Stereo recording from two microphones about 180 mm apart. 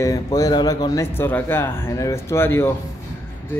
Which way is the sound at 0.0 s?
20° left (ahead or behind).